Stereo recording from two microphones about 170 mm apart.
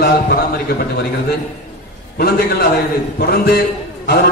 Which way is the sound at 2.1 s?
65° left (ahead or behind).